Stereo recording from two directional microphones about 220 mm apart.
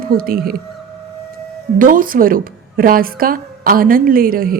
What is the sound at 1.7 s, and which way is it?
Speech, 40° right (ahead or behind).